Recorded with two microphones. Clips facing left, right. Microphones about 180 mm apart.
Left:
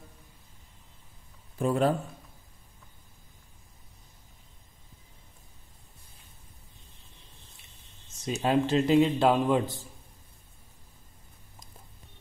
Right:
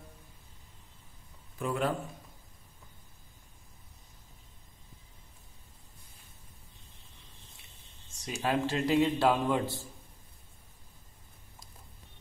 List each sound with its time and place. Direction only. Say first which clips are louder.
1.6 s speech: left 6 dB; 35° left (ahead or behind)
8.2 s a man's voice: left 5 dB; 25° left (ahead or behind)